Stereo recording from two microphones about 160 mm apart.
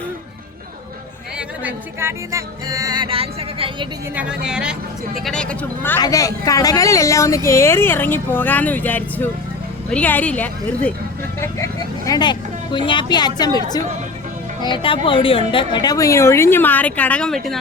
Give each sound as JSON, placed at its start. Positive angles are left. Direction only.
{"t": 1.4, "sound": "speech", "side_deg": -10}
{"t": 4.1, "sound": "speech", "side_deg": -5}
{"t": 6.0, "sound": "speech", "side_deg": 20}
{"t": 11.6, "sound": "speech", "side_deg": 20}